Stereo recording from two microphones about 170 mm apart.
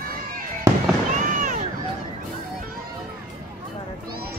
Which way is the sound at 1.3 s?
50° right (ahead or behind).